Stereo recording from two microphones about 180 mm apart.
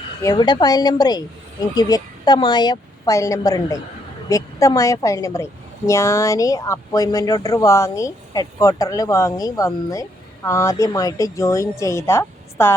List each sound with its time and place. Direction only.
0.2 s a woman's voice: 20° left (ahead or behind)